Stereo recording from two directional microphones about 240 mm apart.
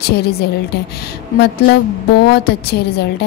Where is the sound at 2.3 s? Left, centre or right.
Left.